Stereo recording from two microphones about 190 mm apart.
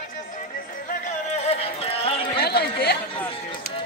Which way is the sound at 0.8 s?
35° left (ahead or behind).